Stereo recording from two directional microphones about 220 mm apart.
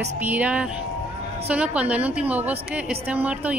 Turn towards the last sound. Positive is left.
turn(degrees=-5)  # may be behind; listen again after turning